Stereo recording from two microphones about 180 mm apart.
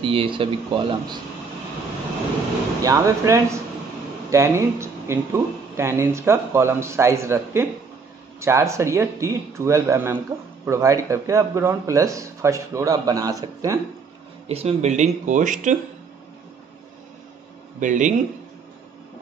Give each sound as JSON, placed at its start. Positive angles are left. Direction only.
{"t": 0.0, "sound": "speech", "side_deg": -30}
{"t": 2.8, "sound": "speech", "side_deg": -15}
{"t": 14.5, "sound": "speech", "side_deg": -35}
{"t": 17.7, "sound": "speech", "side_deg": -45}